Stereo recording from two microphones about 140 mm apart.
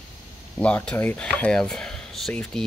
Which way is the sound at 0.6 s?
10° left (ahead or behind).